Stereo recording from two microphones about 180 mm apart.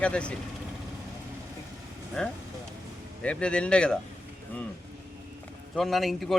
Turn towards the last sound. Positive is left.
turn(degrees=0)  # may be behind; listen again after turning